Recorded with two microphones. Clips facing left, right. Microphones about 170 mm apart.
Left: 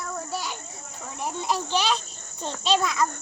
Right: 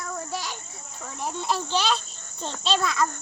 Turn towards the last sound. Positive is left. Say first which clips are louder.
# left 1 dB
turn(degrees=10)  # may be behind; listen again after turning